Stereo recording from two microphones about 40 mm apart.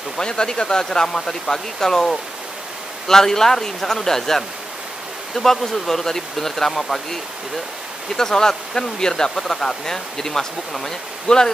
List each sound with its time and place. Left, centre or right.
0.2 s speech: centre
8.2 s speech: centre